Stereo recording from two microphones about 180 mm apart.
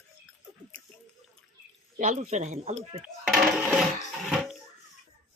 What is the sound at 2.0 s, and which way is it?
A man's voice, 45° right (ahead or behind).